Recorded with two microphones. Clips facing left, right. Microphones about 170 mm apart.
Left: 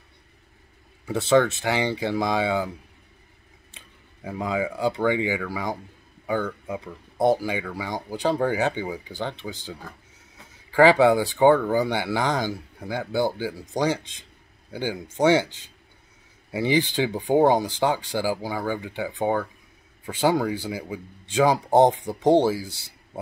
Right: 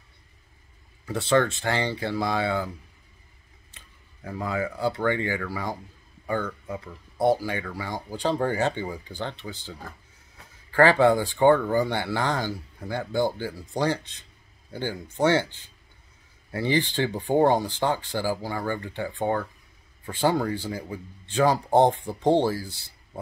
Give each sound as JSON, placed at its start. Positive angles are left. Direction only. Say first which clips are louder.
{"t": 1.0, "sound": "speech", "louder": "left 3 dB", "side_deg": 10}
{"t": 3.7, "sound": "speech", "louder": "left 3 dB", "side_deg": 15}